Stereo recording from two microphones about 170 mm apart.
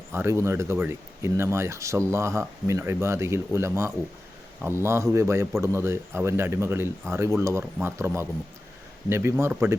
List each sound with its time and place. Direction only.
0.1 s speech: 15° right (ahead or behind)